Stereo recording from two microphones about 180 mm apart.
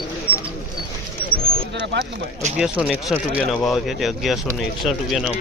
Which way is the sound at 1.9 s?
70° right (ahead or behind).